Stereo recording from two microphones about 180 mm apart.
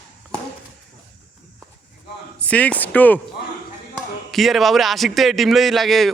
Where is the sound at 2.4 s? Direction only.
5° left (ahead or behind).